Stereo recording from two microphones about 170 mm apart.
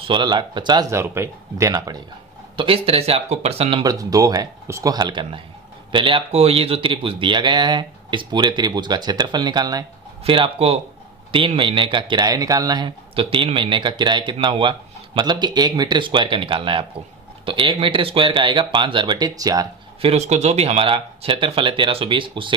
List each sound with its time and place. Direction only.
0.0 s speech: 25° right (ahead or behind)
2.5 s speech: 30° right (ahead or behind)
3.8 s speech: 20° right (ahead or behind)
10.2 s speech: 30° right (ahead or behind)
20.0 s speech: 40° right (ahead or behind)